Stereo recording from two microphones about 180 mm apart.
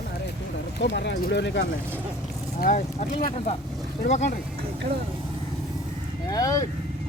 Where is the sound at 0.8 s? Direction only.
75° left (ahead or behind).